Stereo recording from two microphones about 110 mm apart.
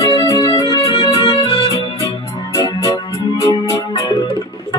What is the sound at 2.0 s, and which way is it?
Music, 30° left (ahead or behind).